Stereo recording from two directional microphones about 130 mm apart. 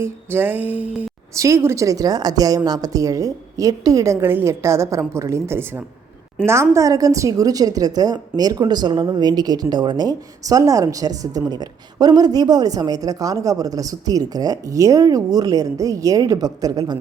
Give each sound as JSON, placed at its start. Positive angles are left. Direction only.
{"t": 0.0, "sound": "music", "side_deg": -15}
{"t": 1.4, "sound": "a woman's voice", "side_deg": -25}